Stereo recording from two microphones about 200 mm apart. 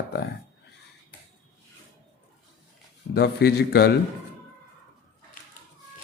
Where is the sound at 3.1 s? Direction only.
55° left (ahead or behind).